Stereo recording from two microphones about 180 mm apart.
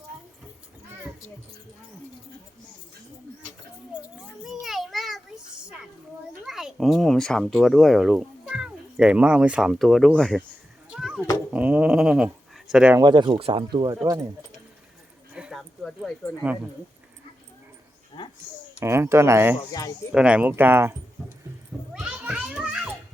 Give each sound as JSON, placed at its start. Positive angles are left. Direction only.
{"t": 4.4, "sound": "children playing", "side_deg": 0}
{"t": 6.4, "sound": "speech", "side_deg": 0}
{"t": 10.8, "sound": "children playing", "side_deg": 0}
{"t": 11.5, "sound": "speech", "side_deg": -5}
{"t": 13.0, "sound": "speech", "side_deg": -25}
{"t": 15.3, "sound": "a sound", "side_deg": -5}
{"t": 18.8, "sound": "speech", "side_deg": -15}
{"t": 21.9, "sound": "children playing", "side_deg": -5}